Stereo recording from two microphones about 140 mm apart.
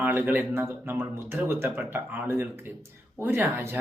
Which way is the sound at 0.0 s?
15° right (ahead or behind).